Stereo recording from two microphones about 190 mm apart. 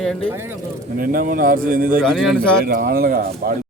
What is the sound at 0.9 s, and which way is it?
Speech, 50° right (ahead or behind).